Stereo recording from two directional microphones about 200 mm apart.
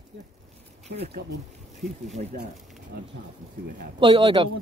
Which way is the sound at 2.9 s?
55° right (ahead or behind).